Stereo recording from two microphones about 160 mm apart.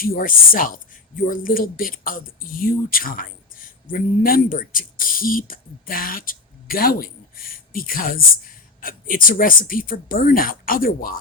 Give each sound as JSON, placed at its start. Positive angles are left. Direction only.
{"t": 0.0, "sound": "speech", "side_deg": 65}